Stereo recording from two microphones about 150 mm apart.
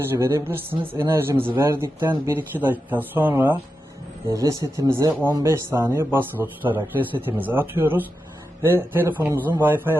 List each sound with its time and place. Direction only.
0.2 s speech: 20° right (ahead or behind)